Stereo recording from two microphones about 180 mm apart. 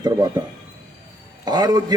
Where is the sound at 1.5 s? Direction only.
25° right (ahead or behind).